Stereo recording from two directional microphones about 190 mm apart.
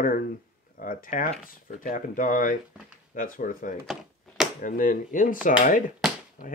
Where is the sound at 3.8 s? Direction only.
Centre (ahead or behind).